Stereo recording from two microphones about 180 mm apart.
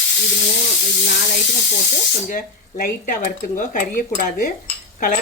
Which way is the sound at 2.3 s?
50° left (ahead or behind).